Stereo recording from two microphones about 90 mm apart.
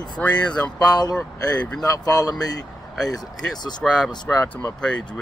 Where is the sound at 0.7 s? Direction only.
50° left (ahead or behind).